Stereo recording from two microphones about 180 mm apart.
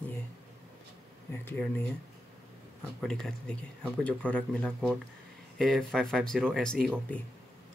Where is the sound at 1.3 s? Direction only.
10° left (ahead or behind).